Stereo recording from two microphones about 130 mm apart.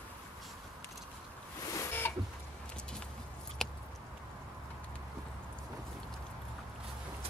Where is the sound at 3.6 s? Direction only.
5° left (ahead or behind).